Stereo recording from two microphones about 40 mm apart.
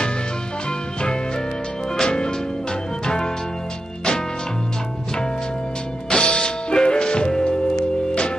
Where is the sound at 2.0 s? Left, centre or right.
Centre.